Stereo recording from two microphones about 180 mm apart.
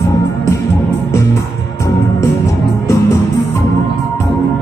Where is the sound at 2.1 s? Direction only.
15° left (ahead or behind).